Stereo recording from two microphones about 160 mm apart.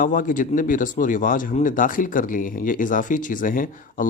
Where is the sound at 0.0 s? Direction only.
55° left (ahead or behind).